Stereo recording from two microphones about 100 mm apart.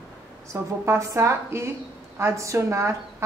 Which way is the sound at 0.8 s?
25° right (ahead or behind).